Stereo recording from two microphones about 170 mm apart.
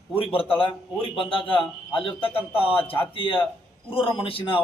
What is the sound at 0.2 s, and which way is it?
A man's voice, 30° left (ahead or behind).